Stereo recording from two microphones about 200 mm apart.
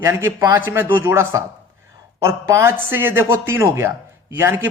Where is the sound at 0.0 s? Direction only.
15° right (ahead or behind).